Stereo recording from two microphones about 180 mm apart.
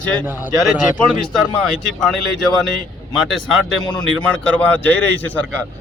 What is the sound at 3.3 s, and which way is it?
Speech, centre (ahead or behind).